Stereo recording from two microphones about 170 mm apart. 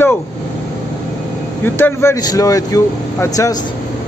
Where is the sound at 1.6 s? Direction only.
10° left (ahead or behind).